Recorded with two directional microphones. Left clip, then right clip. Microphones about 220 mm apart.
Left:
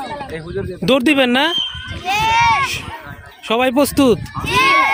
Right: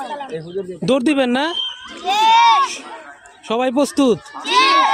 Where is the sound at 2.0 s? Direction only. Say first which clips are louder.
Right 2 dB; 30° left (ahead or behind).